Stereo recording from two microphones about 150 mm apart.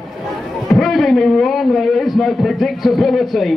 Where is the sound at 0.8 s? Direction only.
Centre (ahead or behind).